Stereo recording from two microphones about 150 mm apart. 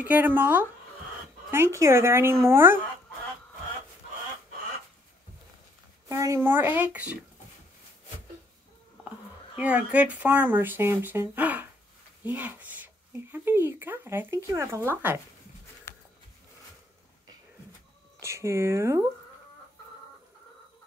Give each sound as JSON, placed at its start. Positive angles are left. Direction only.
{"t": 0.0, "sound": "speech", "side_deg": -10}
{"t": 6.0, "sound": "speech", "side_deg": -20}
{"t": 9.6, "sound": "speech", "side_deg": -10}
{"t": 15.9, "sound": "a sound", "side_deg": 20}
{"t": 18.2, "sound": "speech", "side_deg": -20}